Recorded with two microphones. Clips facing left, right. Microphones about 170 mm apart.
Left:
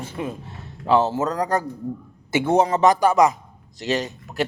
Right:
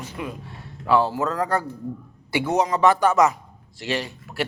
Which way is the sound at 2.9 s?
15° left (ahead or behind).